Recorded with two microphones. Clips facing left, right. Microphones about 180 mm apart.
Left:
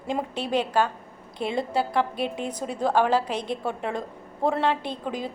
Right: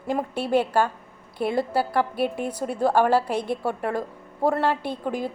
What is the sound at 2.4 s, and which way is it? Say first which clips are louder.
Speech: right 3 dB; 10° right (ahead or behind).